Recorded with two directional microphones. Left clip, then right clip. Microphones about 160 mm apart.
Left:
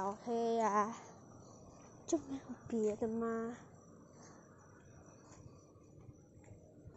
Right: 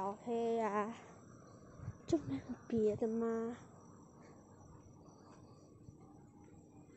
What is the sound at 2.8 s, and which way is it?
Speech, 15° right (ahead or behind).